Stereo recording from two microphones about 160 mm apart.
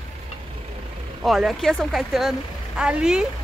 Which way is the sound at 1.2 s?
Centre (ahead or behind).